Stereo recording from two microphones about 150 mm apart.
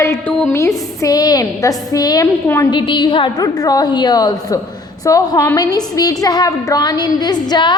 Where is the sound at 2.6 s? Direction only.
30° left (ahead or behind).